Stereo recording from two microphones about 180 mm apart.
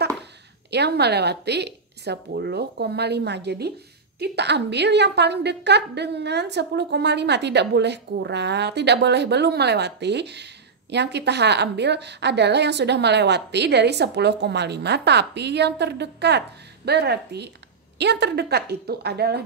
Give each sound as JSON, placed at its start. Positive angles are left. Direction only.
{"t": 0.7, "sound": "a woman's voice", "side_deg": -65}